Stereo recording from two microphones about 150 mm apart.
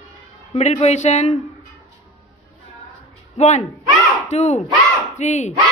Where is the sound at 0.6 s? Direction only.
45° left (ahead or behind).